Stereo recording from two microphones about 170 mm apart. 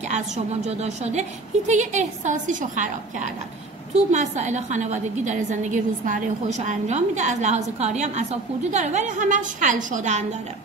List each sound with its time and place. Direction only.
0.7 s a woman's voice: 40° right (ahead or behind)